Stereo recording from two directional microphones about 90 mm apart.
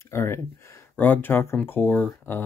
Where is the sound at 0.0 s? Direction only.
30° left (ahead or behind).